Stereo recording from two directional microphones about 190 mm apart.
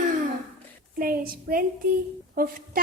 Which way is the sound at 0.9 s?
50° right (ahead or behind).